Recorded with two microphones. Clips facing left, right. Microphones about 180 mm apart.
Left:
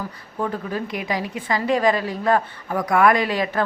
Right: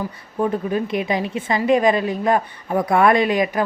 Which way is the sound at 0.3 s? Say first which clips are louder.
Right 5 dB; 20° right (ahead or behind).